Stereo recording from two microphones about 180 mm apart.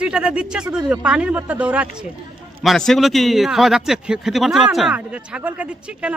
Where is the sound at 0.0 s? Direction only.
5° right (ahead or behind).